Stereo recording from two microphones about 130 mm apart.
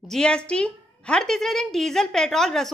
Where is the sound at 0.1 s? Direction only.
5° left (ahead or behind).